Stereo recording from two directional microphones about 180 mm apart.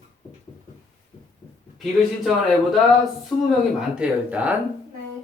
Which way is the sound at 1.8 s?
Centre (ahead or behind).